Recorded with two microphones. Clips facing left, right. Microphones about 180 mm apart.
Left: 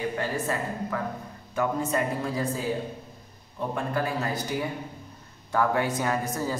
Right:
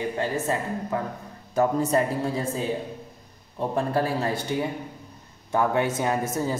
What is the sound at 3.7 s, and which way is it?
Speech, 30° right (ahead or behind).